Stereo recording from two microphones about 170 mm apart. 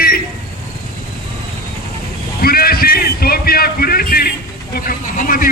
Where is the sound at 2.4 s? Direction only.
60° left (ahead or behind).